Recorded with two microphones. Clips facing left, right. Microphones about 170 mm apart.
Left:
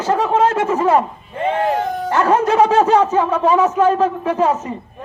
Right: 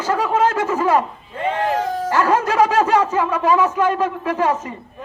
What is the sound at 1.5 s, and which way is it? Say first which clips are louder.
Speech: left 2 dB; 20° left (ahead or behind).